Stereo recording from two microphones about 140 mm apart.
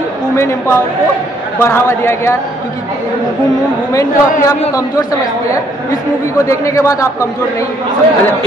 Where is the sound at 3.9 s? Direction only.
25° left (ahead or behind).